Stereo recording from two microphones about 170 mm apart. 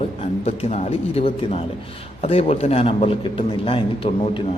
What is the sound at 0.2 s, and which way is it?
A man's voice, 40° left (ahead or behind).